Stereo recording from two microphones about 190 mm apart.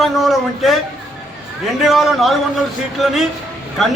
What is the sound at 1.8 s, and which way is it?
A man's voice, centre (ahead or behind).